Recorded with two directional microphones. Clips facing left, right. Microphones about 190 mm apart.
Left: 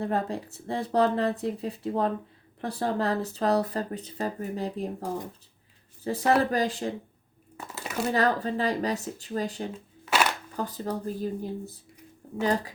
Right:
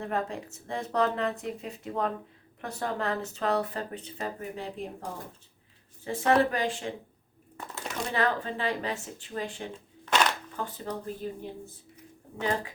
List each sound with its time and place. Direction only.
0.0 s speech: 35° left (ahead or behind)
6.1 s speech: 35° left (ahead or behind)
7.5 s a sound: 5° left (ahead or behind)
8.1 s speech: 40° left (ahead or behind)
9.7 s shuffling cards: 5° left (ahead or behind)
10.6 s speech: 40° left (ahead or behind)